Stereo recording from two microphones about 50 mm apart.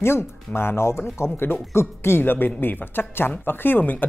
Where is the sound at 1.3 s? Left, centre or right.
Left.